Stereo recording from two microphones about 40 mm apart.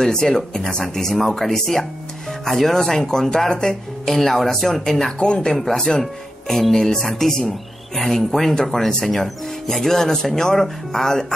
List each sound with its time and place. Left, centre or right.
0.0 s speech: centre
5.2 s speech: centre